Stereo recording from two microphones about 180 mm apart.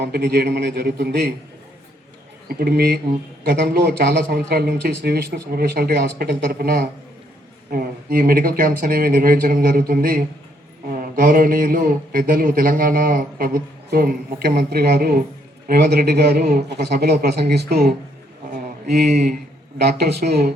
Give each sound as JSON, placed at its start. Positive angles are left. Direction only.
{"t": 0.0, "sound": "a man's voice", "side_deg": -65}
{"t": 2.5, "sound": "a man's voice", "side_deg": -55}
{"t": 18.5, "sound": "mantra", "side_deg": -60}
{"t": 19.8, "sound": "a man's voice", "side_deg": -65}